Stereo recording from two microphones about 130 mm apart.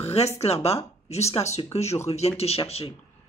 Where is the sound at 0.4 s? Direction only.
55° left (ahead or behind).